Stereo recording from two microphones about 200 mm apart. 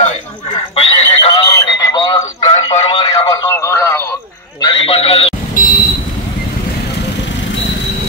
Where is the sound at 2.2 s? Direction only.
30° left (ahead or behind).